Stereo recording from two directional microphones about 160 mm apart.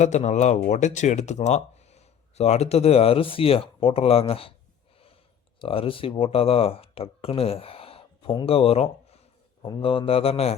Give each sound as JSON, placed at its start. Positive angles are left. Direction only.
{"t": 0.0, "sound": "speech", "side_deg": 45}
{"t": 5.5, "sound": "speech", "side_deg": 35}